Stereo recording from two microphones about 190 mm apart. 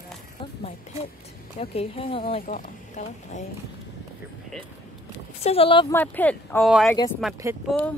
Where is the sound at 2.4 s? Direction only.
45° left (ahead or behind).